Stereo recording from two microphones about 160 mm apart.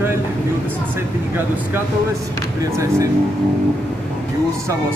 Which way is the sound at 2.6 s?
20° right (ahead or behind).